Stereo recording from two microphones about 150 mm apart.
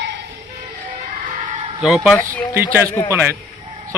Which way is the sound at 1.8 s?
5° right (ahead or behind).